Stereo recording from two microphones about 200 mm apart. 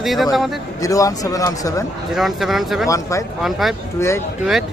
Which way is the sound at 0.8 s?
15° left (ahead or behind).